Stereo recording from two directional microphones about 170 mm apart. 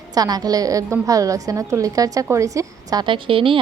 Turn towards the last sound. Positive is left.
turn(degrees=-30)  # may be behind; listen again after turning